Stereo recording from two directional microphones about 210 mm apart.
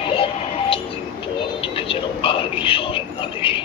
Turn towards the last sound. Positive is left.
turn(degrees=25)  # may be behind; listen again after turning